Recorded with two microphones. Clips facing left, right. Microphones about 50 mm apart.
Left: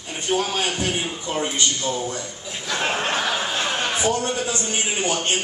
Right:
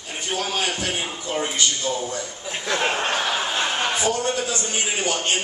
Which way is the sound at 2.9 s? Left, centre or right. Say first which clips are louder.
Even; centre.